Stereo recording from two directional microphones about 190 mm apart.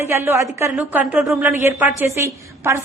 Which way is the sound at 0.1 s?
15° right (ahead or behind).